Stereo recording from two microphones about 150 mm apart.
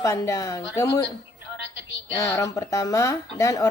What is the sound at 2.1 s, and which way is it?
A woman's voice, 20° left (ahead or behind).